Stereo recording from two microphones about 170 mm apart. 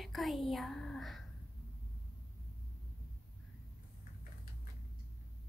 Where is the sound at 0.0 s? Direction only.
Centre (ahead or behind).